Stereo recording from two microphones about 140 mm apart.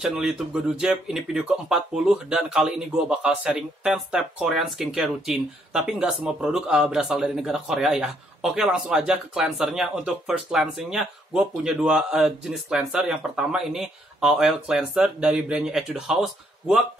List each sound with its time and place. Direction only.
0.0 s speech: 5° right (ahead or behind)